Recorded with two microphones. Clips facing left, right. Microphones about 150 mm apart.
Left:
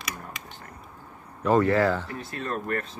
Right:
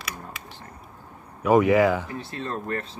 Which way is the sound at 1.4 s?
15° right (ahead or behind).